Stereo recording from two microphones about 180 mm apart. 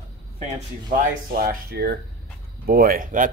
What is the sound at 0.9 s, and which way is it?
Speech, 55° right (ahead or behind).